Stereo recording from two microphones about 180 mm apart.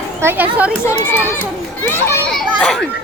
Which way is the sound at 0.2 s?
10° right (ahead or behind).